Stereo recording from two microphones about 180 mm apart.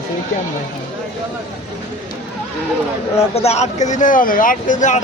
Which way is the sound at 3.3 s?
35° left (ahead or behind).